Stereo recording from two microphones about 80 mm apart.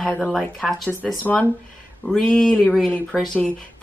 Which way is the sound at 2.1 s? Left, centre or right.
Centre.